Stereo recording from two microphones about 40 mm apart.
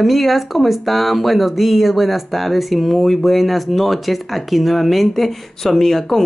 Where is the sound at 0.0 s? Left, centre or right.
Centre.